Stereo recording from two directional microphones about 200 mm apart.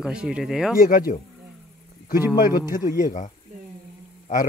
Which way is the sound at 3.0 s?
40° left (ahead or behind).